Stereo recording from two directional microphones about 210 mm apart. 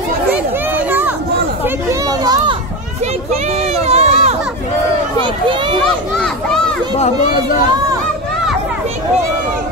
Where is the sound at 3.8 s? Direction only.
30° right (ahead or behind).